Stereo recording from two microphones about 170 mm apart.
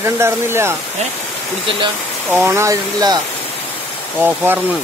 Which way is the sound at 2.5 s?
15° right (ahead or behind).